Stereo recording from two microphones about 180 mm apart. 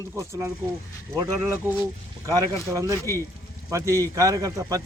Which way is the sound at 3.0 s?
15° left (ahead or behind).